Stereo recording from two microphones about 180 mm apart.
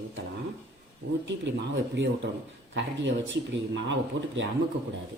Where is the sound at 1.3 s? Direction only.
80° right.